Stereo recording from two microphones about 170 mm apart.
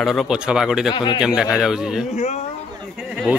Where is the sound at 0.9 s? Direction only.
25° left (ahead or behind).